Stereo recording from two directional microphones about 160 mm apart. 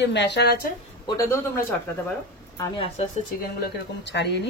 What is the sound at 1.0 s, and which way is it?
Speech, 20° left (ahead or behind).